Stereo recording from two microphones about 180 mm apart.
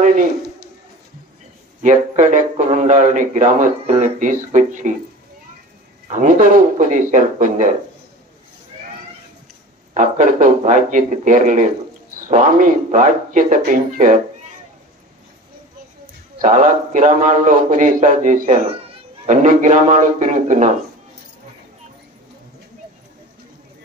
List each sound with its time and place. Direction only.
0.0 s a sound: 45° right (ahead or behind)
1.8 s speech: 45° right (ahead or behind)
6.0 s speech: 45° right (ahead or behind)
9.9 s speech: 45° right (ahead or behind)
16.3 s speech: 45° right (ahead or behind)